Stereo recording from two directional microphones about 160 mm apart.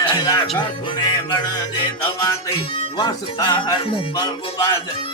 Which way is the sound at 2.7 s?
25° left (ahead or behind).